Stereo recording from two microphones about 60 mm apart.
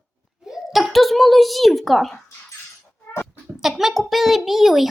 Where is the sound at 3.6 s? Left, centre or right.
Centre.